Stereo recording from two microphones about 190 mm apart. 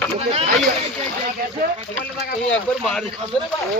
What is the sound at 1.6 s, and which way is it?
Speech, 50° right (ahead or behind).